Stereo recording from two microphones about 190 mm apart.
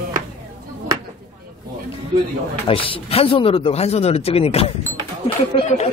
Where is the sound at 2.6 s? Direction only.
30° left (ahead or behind).